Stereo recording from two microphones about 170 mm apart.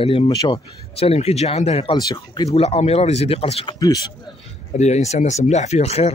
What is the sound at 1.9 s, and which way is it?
Speech, 20° left (ahead or behind).